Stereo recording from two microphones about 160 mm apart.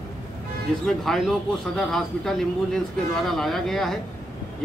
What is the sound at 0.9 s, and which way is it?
A man's voice, 5° left (ahead or behind).